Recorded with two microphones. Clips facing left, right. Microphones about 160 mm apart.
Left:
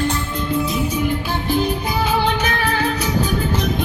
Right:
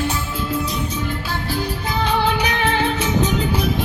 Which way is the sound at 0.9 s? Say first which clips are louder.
Left 4 dB; 20° left (ahead or behind).